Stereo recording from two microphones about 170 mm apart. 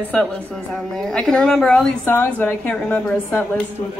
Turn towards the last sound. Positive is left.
turn(degrees=10)  # may be behind; listen again after turning